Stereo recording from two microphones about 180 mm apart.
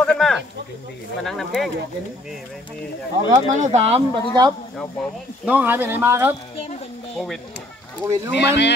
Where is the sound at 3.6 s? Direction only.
35° right (ahead or behind).